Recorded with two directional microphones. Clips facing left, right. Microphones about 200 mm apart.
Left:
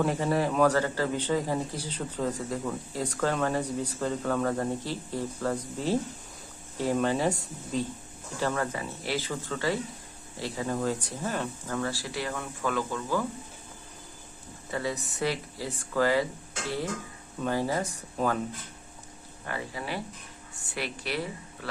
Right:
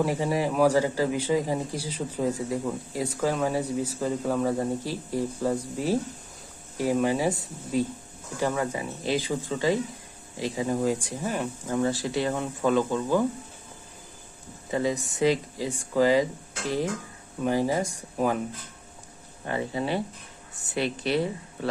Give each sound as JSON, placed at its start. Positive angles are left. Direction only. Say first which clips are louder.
{"t": 0.0, "sound": "a man's voice", "louder": "right 1 dB", "side_deg": -10}
{"t": 14.7, "sound": "a man's voice", "louder": "right 5 dB", "side_deg": -20}
{"t": 19.5, "sound": "speech", "louder": "right 7 dB", "side_deg": -25}